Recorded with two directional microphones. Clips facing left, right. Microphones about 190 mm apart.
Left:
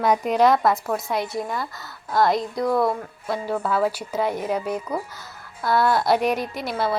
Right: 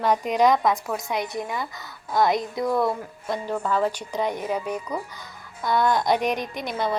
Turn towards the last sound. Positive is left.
turn(degrees=5)  # may be behind; listen again after turning